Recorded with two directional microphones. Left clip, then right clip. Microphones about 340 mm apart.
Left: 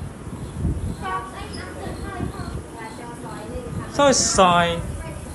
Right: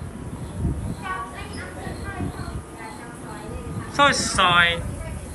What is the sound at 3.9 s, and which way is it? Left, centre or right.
Speech, centre.